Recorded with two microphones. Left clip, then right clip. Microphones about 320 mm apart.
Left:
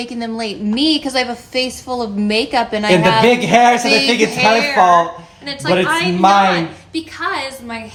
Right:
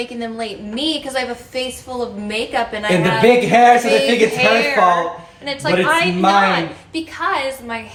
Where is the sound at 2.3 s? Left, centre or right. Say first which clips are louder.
Left 5 dB; centre.